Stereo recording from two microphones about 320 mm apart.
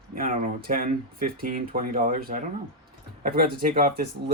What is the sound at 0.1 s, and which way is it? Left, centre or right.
Speech, right.